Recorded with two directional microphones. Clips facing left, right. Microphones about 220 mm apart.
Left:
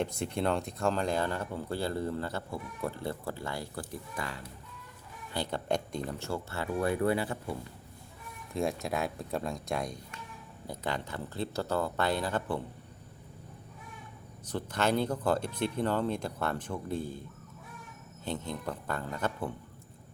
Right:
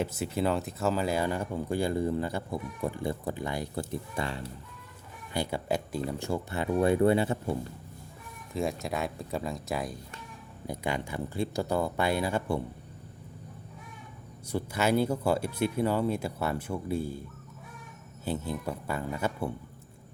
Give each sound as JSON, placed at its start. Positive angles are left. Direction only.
{"t": 0.0, "sound": "speech", "side_deg": -5}
{"t": 5.3, "sound": "speech", "side_deg": -10}
{"t": 8.5, "sound": "speech", "side_deg": 0}
{"t": 14.4, "sound": "speech", "side_deg": -10}
{"t": 18.3, "sound": "speech", "side_deg": -10}